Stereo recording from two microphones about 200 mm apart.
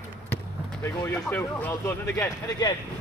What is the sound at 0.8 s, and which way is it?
Speech, 15° left (ahead or behind).